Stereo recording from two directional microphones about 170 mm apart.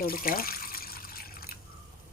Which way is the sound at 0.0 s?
60° left (ahead or behind).